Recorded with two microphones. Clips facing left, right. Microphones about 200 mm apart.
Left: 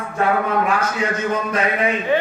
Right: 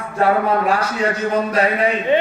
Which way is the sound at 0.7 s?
35° right (ahead or behind).